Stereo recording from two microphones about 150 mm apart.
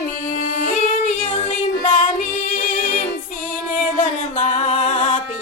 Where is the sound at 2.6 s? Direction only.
70° left (ahead or behind).